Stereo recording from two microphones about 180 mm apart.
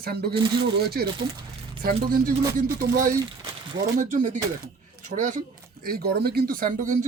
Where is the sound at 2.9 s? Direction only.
20° right (ahead or behind).